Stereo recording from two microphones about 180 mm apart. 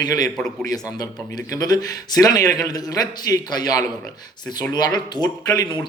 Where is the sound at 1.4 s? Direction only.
20° left (ahead or behind).